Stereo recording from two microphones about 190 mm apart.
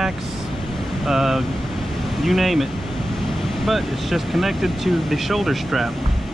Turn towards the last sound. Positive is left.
turn(degrees=0)  # may be behind; listen again after turning